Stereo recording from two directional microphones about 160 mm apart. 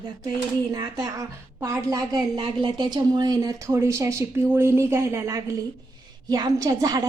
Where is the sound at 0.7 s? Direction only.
25° right (ahead or behind).